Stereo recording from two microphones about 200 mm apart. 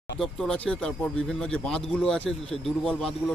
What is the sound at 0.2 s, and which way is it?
Speech, centre (ahead or behind).